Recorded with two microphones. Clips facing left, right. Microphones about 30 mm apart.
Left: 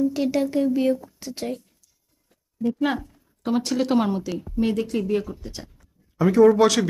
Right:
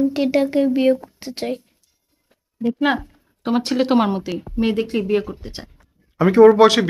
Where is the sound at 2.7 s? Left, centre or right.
Right.